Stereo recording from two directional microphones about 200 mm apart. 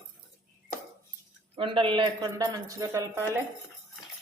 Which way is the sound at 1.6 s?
25° right (ahead or behind).